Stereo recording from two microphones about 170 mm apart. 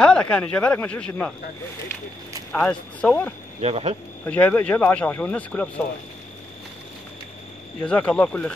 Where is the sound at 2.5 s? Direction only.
5° left (ahead or behind).